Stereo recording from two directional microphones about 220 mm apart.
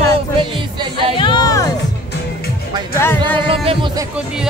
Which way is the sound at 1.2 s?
20° left (ahead or behind).